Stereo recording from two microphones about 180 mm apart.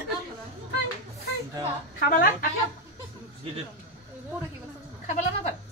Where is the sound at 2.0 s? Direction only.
50° left (ahead or behind).